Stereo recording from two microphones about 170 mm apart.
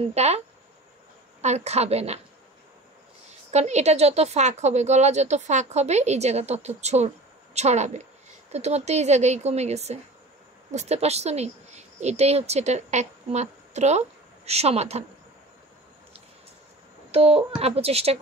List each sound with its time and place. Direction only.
0.0 s speech: 40° right (ahead or behind)
1.4 s speech: 40° right (ahead or behind)
3.5 s a woman's voice: 40° right (ahead or behind)
17.1 s speech: 35° right (ahead or behind)